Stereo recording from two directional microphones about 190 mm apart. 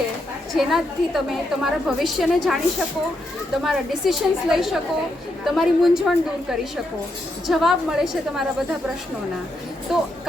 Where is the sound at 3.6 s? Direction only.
Centre (ahead or behind).